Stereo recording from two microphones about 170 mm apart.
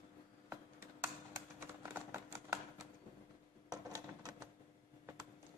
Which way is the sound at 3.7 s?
25° right (ahead or behind).